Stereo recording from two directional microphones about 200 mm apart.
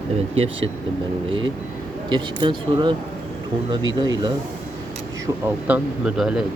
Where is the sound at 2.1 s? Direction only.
25° right (ahead or behind).